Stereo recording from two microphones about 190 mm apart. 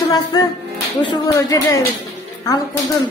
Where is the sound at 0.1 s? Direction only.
20° left (ahead or behind).